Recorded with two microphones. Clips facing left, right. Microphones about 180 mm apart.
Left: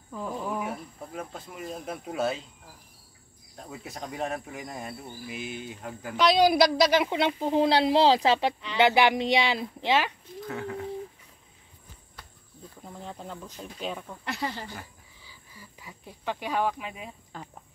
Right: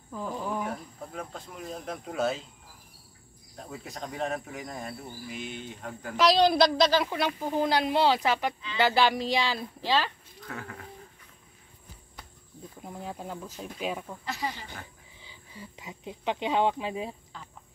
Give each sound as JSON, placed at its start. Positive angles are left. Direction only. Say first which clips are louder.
{"t": 0.1, "sound": "speech", "louder": "even", "side_deg": 0}
{"t": 3.5, "sound": "speech", "louder": "even", "side_deg": 0}
{"t": 12.8, "sound": "speech", "louder": "right 2 dB", "side_deg": -10}
{"t": 14.2, "sound": "speech", "louder": "left 4 dB", "side_deg": 65}
{"t": 15.2, "sound": "speech", "louder": "right 6 dB", "side_deg": -25}
{"t": 17.3, "sound": "a sound", "louder": "left 4 dB", "side_deg": 50}